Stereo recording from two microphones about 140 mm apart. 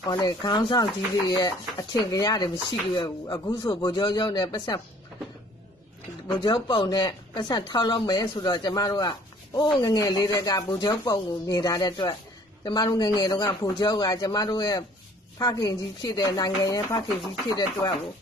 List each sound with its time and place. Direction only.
0.0 s speech: 30° left (ahead or behind)
6.3 s speech: 35° left (ahead or behind)